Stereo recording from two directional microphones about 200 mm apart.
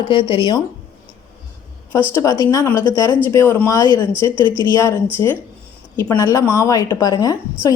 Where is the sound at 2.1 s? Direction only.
15° left (ahead or behind).